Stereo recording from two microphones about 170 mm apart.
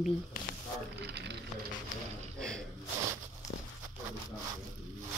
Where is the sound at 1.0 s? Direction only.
80° right.